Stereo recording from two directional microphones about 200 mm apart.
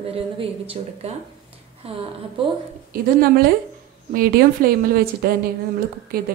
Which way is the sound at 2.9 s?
50° right (ahead or behind).